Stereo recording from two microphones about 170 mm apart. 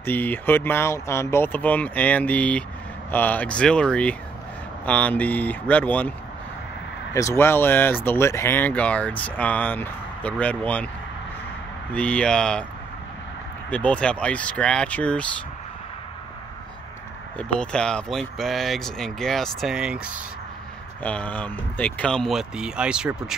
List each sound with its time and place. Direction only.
0.0 s speech: 10° left (ahead or behind)
7.2 s speech: 15° left (ahead or behind)
11.9 s speech: 5° left (ahead or behind)
13.7 s speech: 10° left (ahead or behind)
17.4 s speech: 5° left (ahead or behind)
21.0 s speech: 10° left (ahead or behind)